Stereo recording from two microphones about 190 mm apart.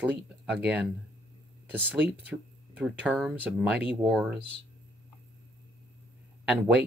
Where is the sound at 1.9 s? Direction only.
10° right (ahead or behind).